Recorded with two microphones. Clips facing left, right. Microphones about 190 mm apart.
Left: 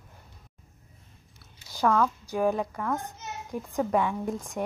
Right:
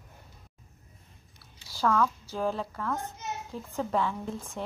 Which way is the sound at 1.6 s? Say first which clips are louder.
Left 2 dB; 20° left (ahead or behind).